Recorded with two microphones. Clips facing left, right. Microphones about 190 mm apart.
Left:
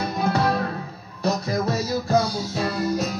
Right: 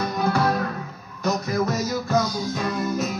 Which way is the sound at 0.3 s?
30° left (ahead or behind).